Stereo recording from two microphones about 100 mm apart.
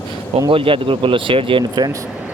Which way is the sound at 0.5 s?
65° right (ahead or behind).